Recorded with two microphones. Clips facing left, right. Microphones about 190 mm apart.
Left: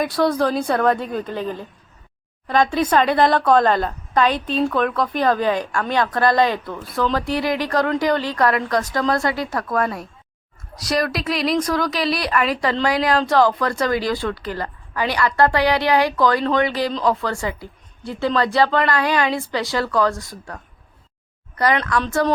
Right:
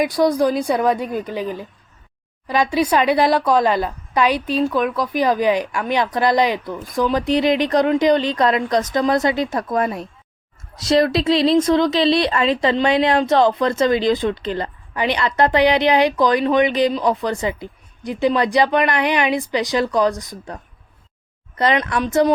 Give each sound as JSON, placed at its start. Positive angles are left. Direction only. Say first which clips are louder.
{"t": 0.4, "sound": "a woman's voice", "louder": "right 2 dB", "side_deg": 0}
{"t": 0.8, "sound": "a woman's voice", "louder": "even", "side_deg": -10}